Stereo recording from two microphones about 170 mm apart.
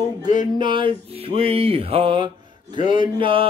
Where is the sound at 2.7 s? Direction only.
30° right (ahead or behind).